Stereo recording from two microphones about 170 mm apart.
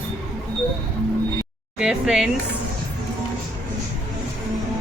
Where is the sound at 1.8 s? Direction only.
5° right (ahead or behind).